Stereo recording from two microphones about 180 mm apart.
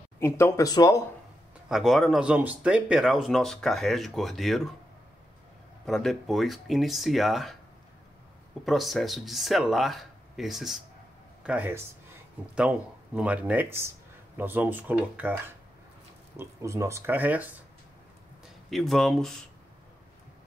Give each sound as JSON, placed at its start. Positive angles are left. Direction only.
{"t": 0.2, "sound": "speech", "side_deg": 15}
{"t": 1.7, "sound": "speech", "side_deg": 0}
{"t": 5.9, "sound": "speech", "side_deg": 0}
{"t": 8.6, "sound": "speech", "side_deg": 0}
{"t": 18.7, "sound": "speech", "side_deg": 0}